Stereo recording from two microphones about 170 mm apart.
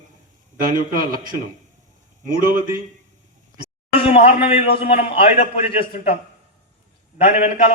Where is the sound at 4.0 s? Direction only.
35° left (ahead or behind).